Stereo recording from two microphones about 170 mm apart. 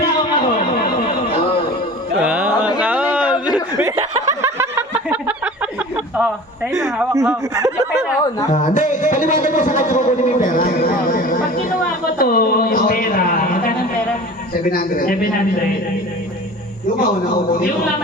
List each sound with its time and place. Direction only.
0.8 s chatter: 60° left (ahead or behind)
2.1 s music: 5° right (ahead or behind)
2.8 s a sound: 10° right (ahead or behind)
3.8 s chuckle: 20° right (ahead or behind)
7.1 s speech: 20° right (ahead or behind)
8.5 s a man's voice: 45° left (ahead or behind)